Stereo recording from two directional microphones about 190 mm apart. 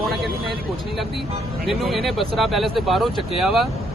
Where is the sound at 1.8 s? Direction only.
Centre (ahead or behind).